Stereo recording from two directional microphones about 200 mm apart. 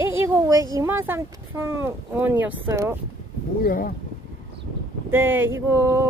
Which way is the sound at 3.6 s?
45° left (ahead or behind).